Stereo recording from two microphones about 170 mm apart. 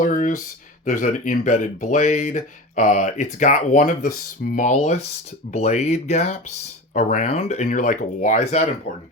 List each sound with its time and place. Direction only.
0.0 s speech: 50° left (ahead or behind)